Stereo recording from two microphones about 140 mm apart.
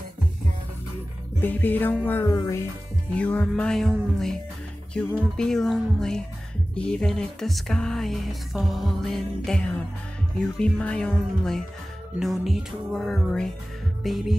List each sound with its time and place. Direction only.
1.4 s music: 15° left (ahead or behind)
3.2 s music: 10° left (ahead or behind)
4.9 s music: 5° left (ahead or behind)